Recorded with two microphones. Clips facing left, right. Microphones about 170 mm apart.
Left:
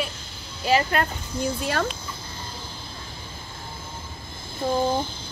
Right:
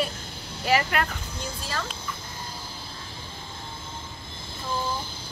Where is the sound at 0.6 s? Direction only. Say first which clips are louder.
Left 2 dB; 20° left (ahead or behind).